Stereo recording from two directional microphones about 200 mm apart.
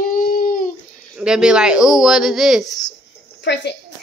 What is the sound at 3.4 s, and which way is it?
Speech, 55° left (ahead or behind).